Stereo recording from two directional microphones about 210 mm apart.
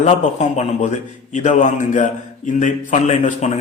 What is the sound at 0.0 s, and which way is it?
Speech, 35° left (ahead or behind).